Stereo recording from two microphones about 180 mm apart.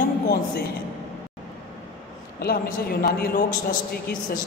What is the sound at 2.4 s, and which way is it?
A woman's voice, 55° left (ahead or behind).